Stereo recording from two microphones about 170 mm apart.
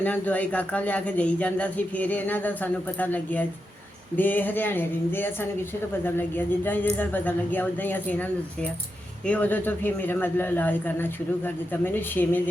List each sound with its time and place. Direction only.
0.0 s speech: 10° left (ahead or behind)